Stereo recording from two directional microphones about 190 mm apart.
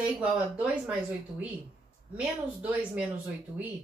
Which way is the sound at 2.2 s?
10° right (ahead or behind).